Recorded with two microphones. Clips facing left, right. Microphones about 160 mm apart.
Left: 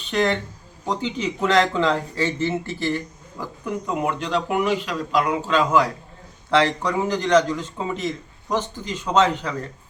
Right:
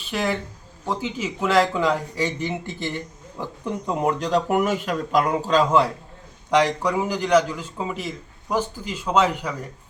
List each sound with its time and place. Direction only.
0.1 s a man's voice: 5° right (ahead or behind); by 5.9 s 30° right (ahead or behind)
6.5 s a man's voice: 10° right (ahead or behind)